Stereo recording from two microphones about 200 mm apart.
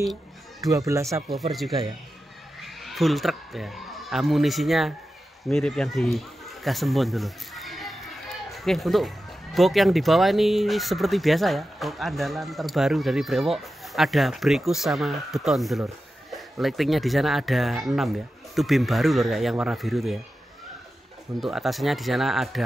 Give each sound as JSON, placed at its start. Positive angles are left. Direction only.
{"t": 0.6, "sound": "speech", "side_deg": -15}
{"t": 1.5, "sound": "speech", "side_deg": 0}
{"t": 21.4, "sound": "speech", "side_deg": 0}